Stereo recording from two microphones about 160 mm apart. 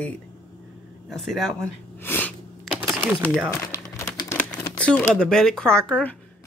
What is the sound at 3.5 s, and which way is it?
Crumpling, 20° left (ahead or behind).